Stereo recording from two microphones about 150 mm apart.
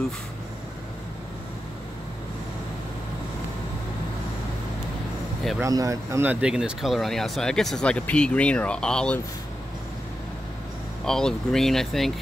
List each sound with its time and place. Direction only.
5.6 s speech: 20° right (ahead or behind)
6.4 s speech: 5° right (ahead or behind)
11.1 s speech: 5° left (ahead or behind)